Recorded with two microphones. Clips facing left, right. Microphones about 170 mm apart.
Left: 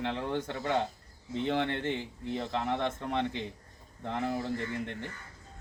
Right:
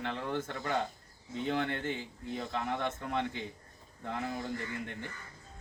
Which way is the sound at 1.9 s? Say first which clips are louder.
Left 4 dB; 70° left (ahead or behind).